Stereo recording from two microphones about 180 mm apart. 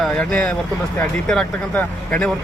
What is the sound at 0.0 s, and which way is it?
Speech, 5° left (ahead or behind).